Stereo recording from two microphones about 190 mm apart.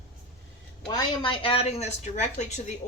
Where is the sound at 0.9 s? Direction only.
20° left (ahead or behind).